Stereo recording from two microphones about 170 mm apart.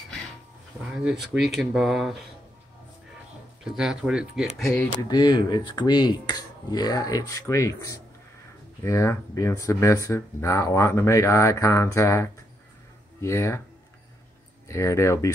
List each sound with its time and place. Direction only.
0.9 s speech: 5° right (ahead or behind)
3.6 s speech: 5° right (ahead or behind)
5.1 s speech: 25° left (ahead or behind)
14.7 s speech: 15° left (ahead or behind)